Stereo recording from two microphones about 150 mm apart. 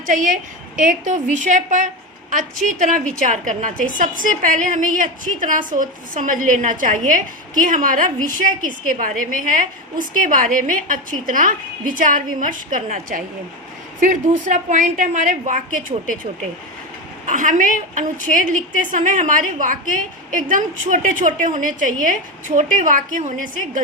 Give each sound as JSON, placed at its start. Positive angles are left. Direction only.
{"t": 0.1, "sound": "a woman's voice", "side_deg": -60}
{"t": 17.2, "sound": "a woman's voice", "side_deg": -60}